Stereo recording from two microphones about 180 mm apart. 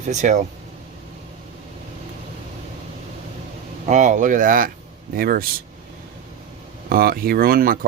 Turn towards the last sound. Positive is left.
turn(degrees=-55)  # may be behind; listen again after turning